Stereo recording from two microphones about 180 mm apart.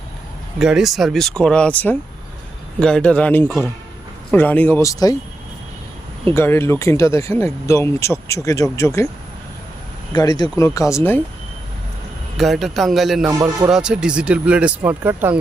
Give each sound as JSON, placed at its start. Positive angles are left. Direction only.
{"t": 0.6, "sound": "speech", "side_deg": 0}
{"t": 6.3, "sound": "speech", "side_deg": 15}
{"t": 10.1, "sound": "speech", "side_deg": 20}
{"t": 12.4, "sound": "speech", "side_deg": 0}